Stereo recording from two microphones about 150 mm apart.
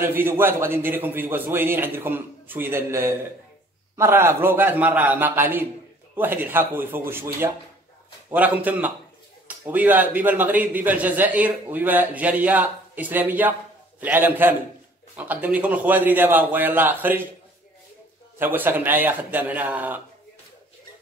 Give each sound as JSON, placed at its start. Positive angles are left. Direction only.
{"t": 0.0, "sound": "a man's voice", "side_deg": -15}
{"t": 18.4, "sound": "a man's voice", "side_deg": -15}